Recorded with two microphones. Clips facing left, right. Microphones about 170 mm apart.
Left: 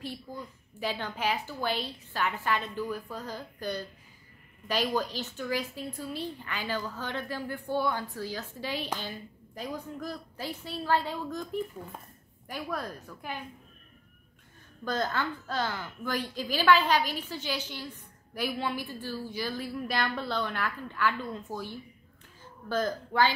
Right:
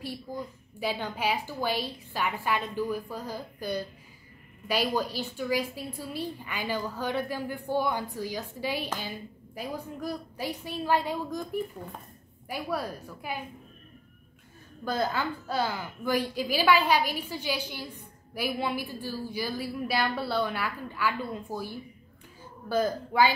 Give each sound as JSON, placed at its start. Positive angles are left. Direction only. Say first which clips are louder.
{"t": 0.0, "sound": "a woman's voice", "louder": "right 3 dB", "side_deg": -10}
{"t": 14.9, "sound": "a woman's voice", "louder": "right 2 dB", "side_deg": -10}